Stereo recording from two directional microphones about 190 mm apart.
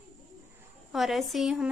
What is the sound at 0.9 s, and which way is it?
Speech, centre (ahead or behind).